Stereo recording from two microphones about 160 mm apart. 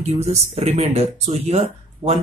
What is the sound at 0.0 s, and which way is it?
Speech, 40° right (ahead or behind).